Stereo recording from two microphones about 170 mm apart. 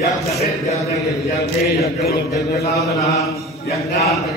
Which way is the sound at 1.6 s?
65° left (ahead or behind).